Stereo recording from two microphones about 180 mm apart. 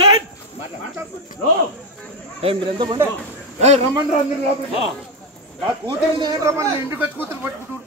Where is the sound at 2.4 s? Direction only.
30° right (ahead or behind).